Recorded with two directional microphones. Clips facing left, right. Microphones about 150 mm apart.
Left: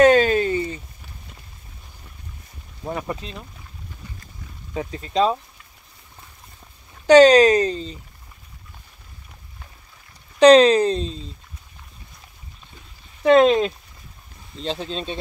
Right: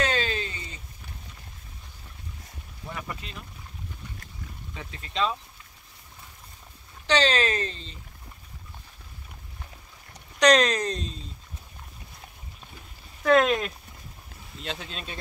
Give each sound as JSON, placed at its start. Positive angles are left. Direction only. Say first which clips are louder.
{"t": 0.0, "sound": "a sound", "louder": "left 13 dB", "side_deg": 45}
{"t": 2.8, "sound": "speech", "louder": "left 9 dB", "side_deg": 35}
{"t": 4.7, "sound": "speech", "louder": "left 9 dB", "side_deg": 40}
{"t": 7.1, "sound": "speech", "louder": "left 13 dB", "side_deg": 45}
{"t": 10.4, "sound": "speech", "louder": "left 9 dB", "side_deg": 30}
{"t": 13.2, "sound": "speech", "louder": "left 7 dB", "side_deg": 25}